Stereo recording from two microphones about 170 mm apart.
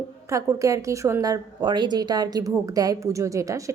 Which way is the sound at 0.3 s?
20° right (ahead or behind).